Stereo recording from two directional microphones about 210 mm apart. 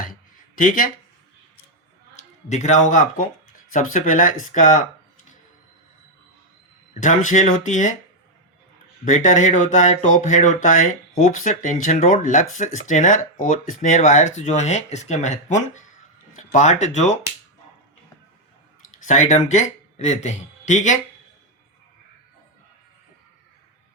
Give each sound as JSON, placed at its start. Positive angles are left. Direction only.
{"t": 0.6, "sound": "speech", "side_deg": 40}
{"t": 2.1, "sound": "speech", "side_deg": 35}
{"t": 7.0, "sound": "speech", "side_deg": 35}
{"t": 9.0, "sound": "speech", "side_deg": 35}
{"t": 18.9, "sound": "speech", "side_deg": 35}